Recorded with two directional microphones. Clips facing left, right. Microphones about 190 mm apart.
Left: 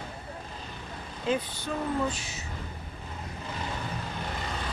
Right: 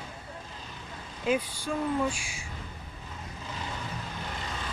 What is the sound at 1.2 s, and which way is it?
Speech, 10° right (ahead or behind).